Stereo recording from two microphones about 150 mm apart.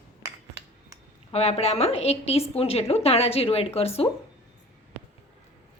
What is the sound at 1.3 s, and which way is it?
A woman's voice, 45° left (ahead or behind).